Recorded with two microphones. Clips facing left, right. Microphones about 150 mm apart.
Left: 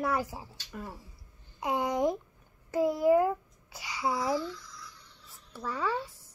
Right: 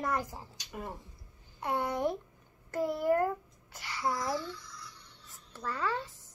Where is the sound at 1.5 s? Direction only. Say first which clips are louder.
Left 3 dB; 10° left (ahead or behind).